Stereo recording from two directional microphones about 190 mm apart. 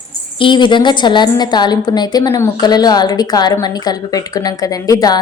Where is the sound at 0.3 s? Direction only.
25° left (ahead or behind).